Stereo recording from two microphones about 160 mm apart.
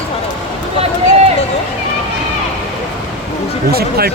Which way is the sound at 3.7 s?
75° right (ahead or behind).